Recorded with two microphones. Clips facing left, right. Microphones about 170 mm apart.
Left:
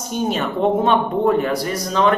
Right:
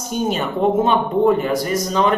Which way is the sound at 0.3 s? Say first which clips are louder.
Even; 5° right (ahead or behind).